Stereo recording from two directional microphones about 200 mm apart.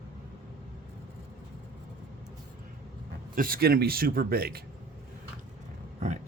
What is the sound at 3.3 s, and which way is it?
Speech, 45° right (ahead or behind).